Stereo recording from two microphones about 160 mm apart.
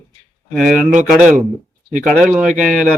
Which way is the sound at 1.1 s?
5° right (ahead or behind).